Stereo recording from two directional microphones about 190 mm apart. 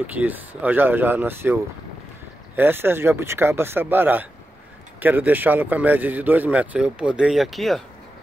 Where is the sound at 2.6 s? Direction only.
10° right (ahead or behind).